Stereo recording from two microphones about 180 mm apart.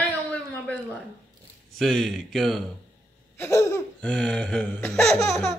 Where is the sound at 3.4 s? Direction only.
15° left (ahead or behind).